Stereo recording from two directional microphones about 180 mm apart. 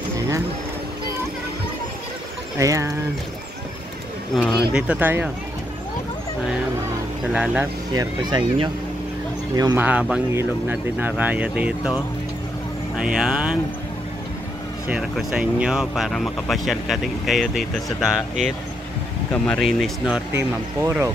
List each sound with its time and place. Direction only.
2.6 s speech: 15° right (ahead or behind)
4.7 s speech: 10° right (ahead or behind)
7.3 s speech: 5° right (ahead or behind)
7.9 s speech: 20° right (ahead or behind)
9.8 s speech: 5° right (ahead or behind)
14.9 s speech: 5° right (ahead or behind)
20.3 s speech: 15° right (ahead or behind)